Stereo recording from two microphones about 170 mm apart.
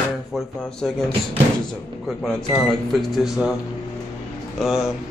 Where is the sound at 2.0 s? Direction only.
Centre (ahead or behind).